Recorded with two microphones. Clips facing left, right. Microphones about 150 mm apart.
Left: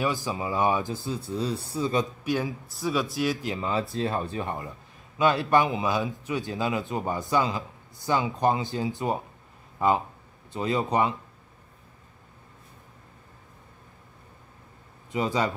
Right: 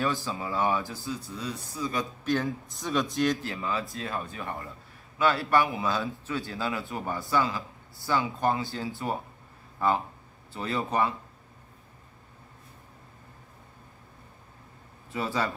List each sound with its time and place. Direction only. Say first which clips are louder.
0.0 s a man's voice: left 2 dB; 15° left (ahead or behind)
2.2 s a man's voice: even; 10° left (ahead or behind)
3.4 s a man's voice: left 4 dB; 25° left (ahead or behind)
15.0 s speech: left 4 dB; 15° left (ahead or behind)